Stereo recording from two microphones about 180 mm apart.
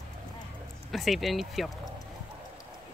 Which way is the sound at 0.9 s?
Centre (ahead or behind).